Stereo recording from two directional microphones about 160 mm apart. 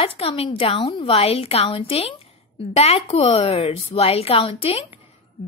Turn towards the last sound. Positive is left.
turn(degrees=40)  # may be behind; listen again after turning